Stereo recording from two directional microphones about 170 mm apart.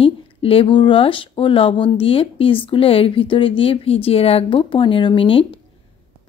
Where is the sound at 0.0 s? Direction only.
35° left (ahead or behind).